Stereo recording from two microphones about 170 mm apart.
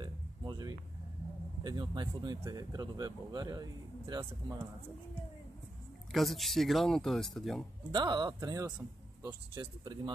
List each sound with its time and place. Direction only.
0.0 s a sound: 25° right (ahead or behind)
1.6 s speech: 25° right (ahead or behind)
6.1 s speech: centre (ahead or behind)
7.9 s speech: 25° right (ahead or behind)